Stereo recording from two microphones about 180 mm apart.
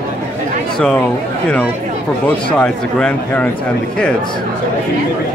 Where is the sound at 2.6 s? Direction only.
5° left (ahead or behind).